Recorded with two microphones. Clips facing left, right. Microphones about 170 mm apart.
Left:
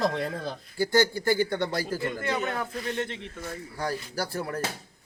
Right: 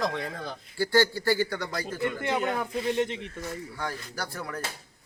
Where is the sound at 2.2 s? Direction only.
15° right (ahead or behind).